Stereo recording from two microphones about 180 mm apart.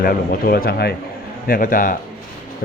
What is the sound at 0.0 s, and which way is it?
Speech, 55° left (ahead or behind).